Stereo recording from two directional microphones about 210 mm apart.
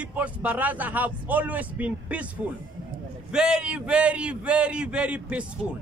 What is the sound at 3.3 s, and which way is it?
Speech, 5° right (ahead or behind).